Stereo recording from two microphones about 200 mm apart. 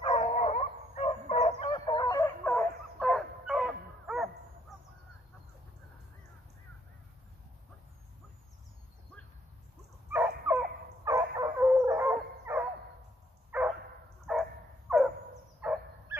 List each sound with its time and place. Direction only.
0.0 s dog: 30° left (ahead or behind)
1.6 s chicken: 25° left (ahead or behind)
2.4 s dog: 5° left (ahead or behind)
10.1 s dog: 10° right (ahead or behind)
14.9 s a sound: 5° right (ahead or behind)
15.6 s bow-wow: 5° right (ahead or behind)